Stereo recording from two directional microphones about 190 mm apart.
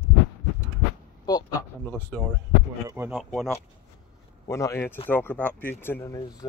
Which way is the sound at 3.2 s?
5° left (ahead or behind).